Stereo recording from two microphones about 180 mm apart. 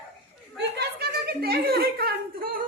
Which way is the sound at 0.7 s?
60° right (ahead or behind).